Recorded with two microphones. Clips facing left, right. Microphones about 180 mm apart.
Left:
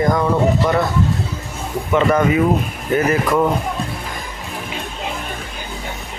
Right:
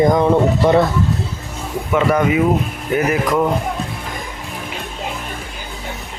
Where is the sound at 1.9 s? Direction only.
10° right (ahead or behind).